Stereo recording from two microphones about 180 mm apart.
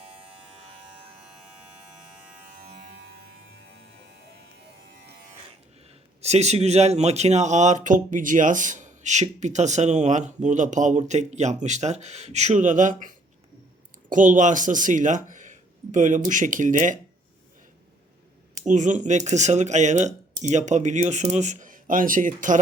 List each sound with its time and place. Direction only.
2.7 s music: 90° right
4.9 s music: 65° right (ahead or behind)
6.2 s speech: 35° right (ahead or behind)
18.6 s speech: 40° right (ahead or behind)